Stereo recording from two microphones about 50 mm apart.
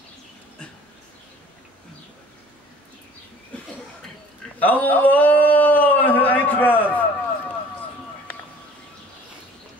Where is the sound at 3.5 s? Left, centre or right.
Left.